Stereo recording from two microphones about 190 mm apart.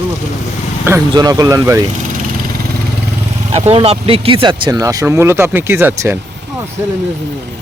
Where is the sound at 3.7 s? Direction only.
30° right (ahead or behind); by 6.2 s 10° right (ahead or behind).